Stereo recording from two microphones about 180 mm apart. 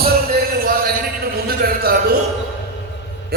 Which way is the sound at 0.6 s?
55° right (ahead or behind).